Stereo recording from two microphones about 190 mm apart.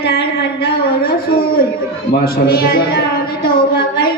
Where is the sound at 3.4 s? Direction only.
50° left (ahead or behind).